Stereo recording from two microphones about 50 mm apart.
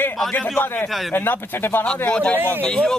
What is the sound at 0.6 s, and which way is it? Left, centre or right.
Speech, left.